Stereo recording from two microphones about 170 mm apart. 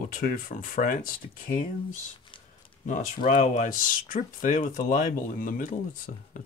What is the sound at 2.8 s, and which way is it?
Speech, 50° left (ahead or behind).